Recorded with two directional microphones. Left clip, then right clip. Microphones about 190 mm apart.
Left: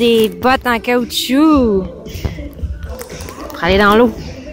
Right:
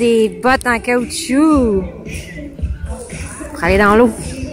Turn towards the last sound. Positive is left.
turn(degrees=0)  # may be behind; listen again after turning